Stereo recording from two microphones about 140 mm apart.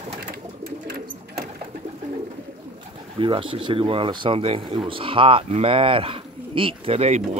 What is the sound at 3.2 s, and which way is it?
Speech, 40° right (ahead or behind).